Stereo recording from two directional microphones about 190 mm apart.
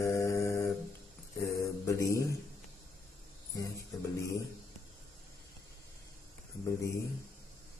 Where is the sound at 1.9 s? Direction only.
15° left (ahead or behind).